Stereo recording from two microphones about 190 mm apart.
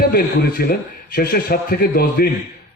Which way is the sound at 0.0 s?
55° left (ahead or behind).